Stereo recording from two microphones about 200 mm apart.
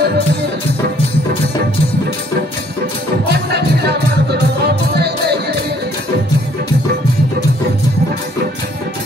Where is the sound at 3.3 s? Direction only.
55° right (ahead or behind).